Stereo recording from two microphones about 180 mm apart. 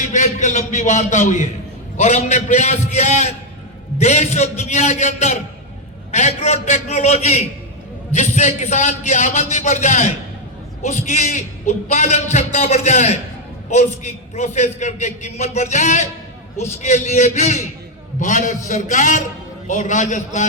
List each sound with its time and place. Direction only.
0.0 s a man's voice: 45° left (ahead or behind)